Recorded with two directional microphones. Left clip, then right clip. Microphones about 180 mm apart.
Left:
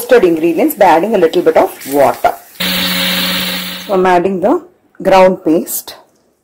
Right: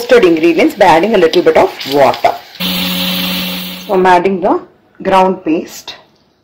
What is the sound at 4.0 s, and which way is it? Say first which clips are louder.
Speech: right 2 dB; 40° left (ahead or behind).